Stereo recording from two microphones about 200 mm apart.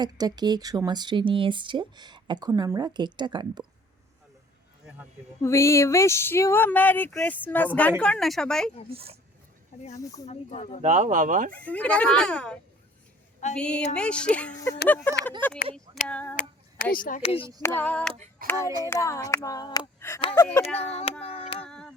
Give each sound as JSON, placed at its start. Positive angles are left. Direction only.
{"t": 0.0, "sound": "speech", "side_deg": -20}
{"t": 5.4, "sound": "speech", "side_deg": 15}
{"t": 10.0, "sound": "speech", "side_deg": 15}
{"t": 10.2, "sound": "speech", "side_deg": 30}
{"t": 10.8, "sound": "speech", "side_deg": -40}
{"t": 11.5, "sound": "speech", "side_deg": 5}
{"t": 13.6, "sound": "speech", "side_deg": 5}
{"t": 16.3, "sound": "female singing", "side_deg": 45}
{"t": 16.9, "sound": "speech", "side_deg": 45}
{"t": 17.7, "sound": "speech", "side_deg": 5}
{"t": 19.5, "sound": "child singing", "side_deg": 20}
{"t": 20.3, "sound": "speech", "side_deg": 15}
{"t": 20.7, "sound": "child singing", "side_deg": 30}
{"t": 21.6, "sound": "a sound", "side_deg": 5}